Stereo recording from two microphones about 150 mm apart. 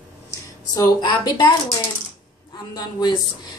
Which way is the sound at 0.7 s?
30° left (ahead or behind).